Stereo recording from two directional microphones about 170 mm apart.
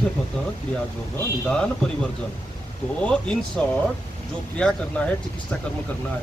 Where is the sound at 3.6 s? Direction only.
5° left (ahead or behind).